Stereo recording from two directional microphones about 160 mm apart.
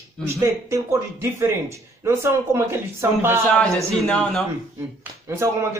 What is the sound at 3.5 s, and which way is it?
Speech, 5° left (ahead or behind).